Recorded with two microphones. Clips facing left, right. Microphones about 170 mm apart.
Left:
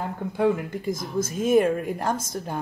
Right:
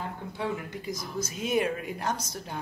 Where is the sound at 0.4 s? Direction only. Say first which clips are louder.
Left 10 dB; 50° left (ahead or behind).